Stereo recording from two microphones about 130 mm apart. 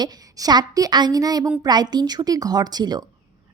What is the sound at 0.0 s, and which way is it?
A woman's voice, 30° right (ahead or behind).